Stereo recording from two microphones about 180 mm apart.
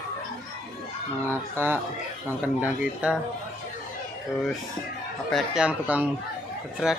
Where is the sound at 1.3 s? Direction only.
10° right (ahead or behind).